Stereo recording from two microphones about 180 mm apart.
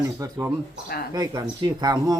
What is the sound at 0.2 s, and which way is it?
Speech, 15° right (ahead or behind).